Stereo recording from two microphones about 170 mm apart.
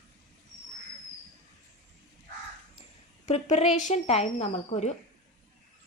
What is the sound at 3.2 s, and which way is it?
Speech, 40° left (ahead or behind).